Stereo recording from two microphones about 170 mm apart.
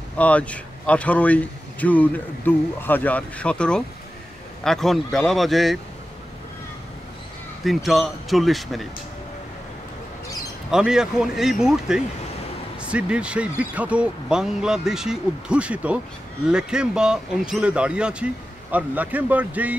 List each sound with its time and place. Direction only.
0.2 s speech: 10° left (ahead or behind)
7.6 s speech: centre (ahead or behind)
10.7 s speech: 5° right (ahead or behind)